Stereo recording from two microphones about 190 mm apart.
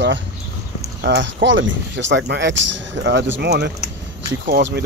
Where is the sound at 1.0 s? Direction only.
65° right (ahead or behind).